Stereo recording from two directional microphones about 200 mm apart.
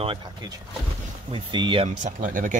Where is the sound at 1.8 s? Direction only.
40° right (ahead or behind).